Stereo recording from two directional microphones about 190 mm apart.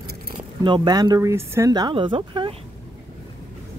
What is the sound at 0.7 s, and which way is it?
Speech, 25° right (ahead or behind).